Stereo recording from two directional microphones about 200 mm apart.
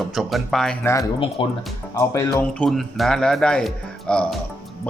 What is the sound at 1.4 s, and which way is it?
Speech, 25° left (ahead or behind).